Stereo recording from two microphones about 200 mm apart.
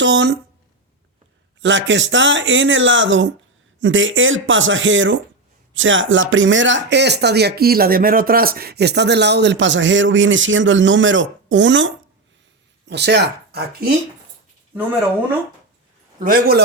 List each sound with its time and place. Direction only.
0.0 s speech: 60° right (ahead or behind)
1.6 s speech: 65° right (ahead or behind)
16.2 s a man's voice: 50° right (ahead or behind)